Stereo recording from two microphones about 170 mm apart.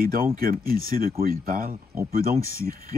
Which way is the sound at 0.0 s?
60° right (ahead or behind).